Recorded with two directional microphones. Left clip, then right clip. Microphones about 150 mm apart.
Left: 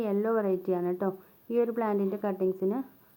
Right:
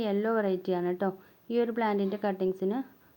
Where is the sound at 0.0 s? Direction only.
30° right (ahead or behind).